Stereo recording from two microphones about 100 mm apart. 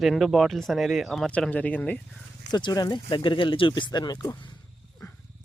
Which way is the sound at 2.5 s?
50° left (ahead or behind).